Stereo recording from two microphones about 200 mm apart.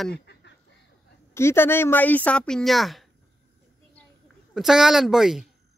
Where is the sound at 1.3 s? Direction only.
10° left (ahead or behind).